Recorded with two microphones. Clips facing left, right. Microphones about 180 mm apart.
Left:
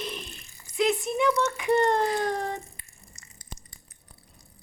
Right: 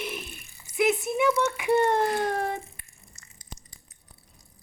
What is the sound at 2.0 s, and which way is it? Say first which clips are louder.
Speech: right 1 dB; 60° right (ahead or behind).